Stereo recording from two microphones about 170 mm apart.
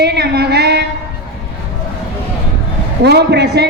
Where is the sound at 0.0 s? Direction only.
75° right (ahead or behind).